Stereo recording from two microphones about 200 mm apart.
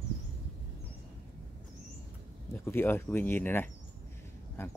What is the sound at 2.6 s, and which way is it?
Speech, 10° left (ahead or behind).